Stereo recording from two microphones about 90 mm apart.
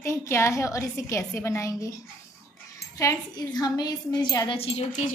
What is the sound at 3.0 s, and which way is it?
A woman's voice, 45° left (ahead or behind).